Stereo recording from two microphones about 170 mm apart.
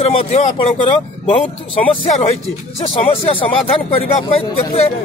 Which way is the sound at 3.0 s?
35° left (ahead or behind).